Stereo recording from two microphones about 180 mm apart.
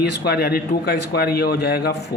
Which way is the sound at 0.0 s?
65° left (ahead or behind).